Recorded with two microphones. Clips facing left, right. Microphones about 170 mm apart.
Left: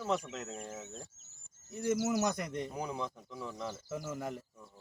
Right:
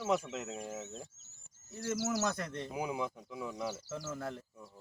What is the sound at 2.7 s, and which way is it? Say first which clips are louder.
Speech: right 2 dB; 10° right (ahead or behind).